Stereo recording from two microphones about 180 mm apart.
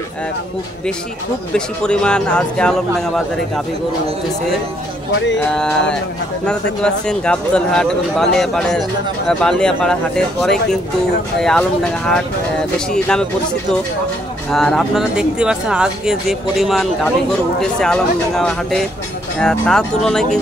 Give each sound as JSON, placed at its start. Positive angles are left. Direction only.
{"t": 1.5, "sound": "speech", "side_deg": 5}
{"t": 5.4, "sound": "speech", "side_deg": 5}
{"t": 14.5, "sound": "speech", "side_deg": 5}